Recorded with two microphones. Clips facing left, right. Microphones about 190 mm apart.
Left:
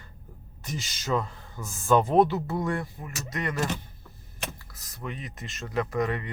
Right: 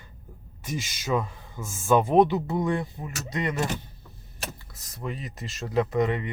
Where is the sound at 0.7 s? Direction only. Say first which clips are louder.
Right 2 dB; 15° right (ahead or behind).